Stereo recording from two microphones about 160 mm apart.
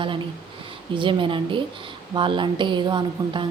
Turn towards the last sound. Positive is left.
turn(degrees=-30)  # may be behind; listen again after turning